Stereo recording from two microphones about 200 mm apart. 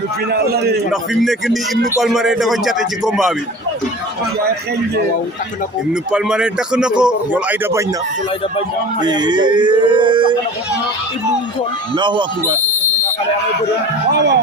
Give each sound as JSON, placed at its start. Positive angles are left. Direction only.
{"t": 0.3, "sound": "a man's voice", "side_deg": -55}
{"t": 0.9, "sound": "a man's voice", "side_deg": 0}
{"t": 5.9, "sound": "a man's voice", "side_deg": -5}
{"t": 9.0, "sound": "speech", "side_deg": -20}
{"t": 11.9, "sound": "speech", "side_deg": -25}
{"t": 14.1, "sound": "speech", "side_deg": -55}